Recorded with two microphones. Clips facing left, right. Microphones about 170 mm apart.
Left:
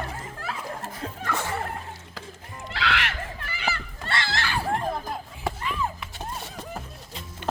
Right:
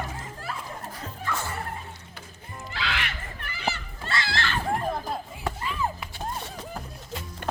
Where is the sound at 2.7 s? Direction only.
75° left (ahead or behind); by 3.8 s 90° left.